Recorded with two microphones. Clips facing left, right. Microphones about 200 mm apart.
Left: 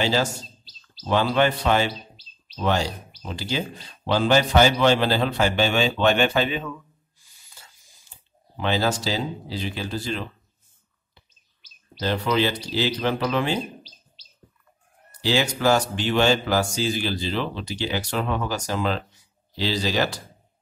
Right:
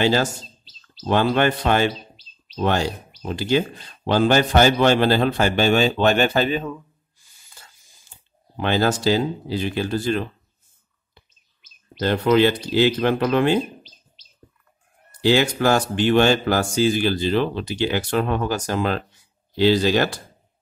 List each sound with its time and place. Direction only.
0.0 s a man's voice: 55° right (ahead or behind)
8.5 s a man's voice: 55° right (ahead or behind)
12.0 s a man's voice: 55° right (ahead or behind)
15.0 s a man's voice: 55° right (ahead or behind)